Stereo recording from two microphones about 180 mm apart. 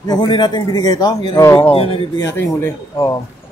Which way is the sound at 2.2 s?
15° left (ahead or behind).